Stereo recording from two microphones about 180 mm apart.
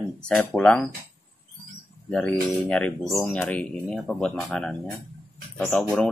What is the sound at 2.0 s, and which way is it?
Speech, 5° left (ahead or behind).